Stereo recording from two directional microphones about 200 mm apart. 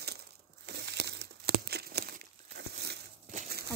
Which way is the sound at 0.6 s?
55° right (ahead or behind).